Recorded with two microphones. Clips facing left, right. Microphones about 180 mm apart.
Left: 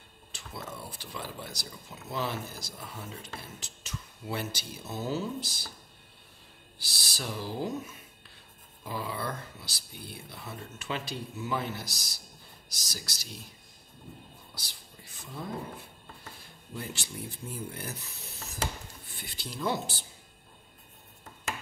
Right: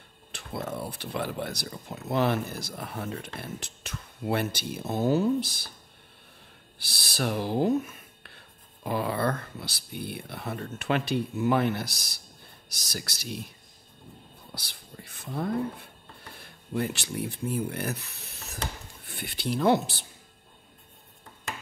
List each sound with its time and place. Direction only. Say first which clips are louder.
0.3 s speech: right 8 dB; 60° right (ahead or behind)
6.8 s speech: right 9 dB; 60° right (ahead or behind)
14.5 s speech: right 6 dB; 60° right (ahead or behind)